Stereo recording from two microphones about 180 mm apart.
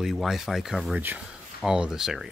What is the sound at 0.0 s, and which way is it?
Speech, centre (ahead or behind).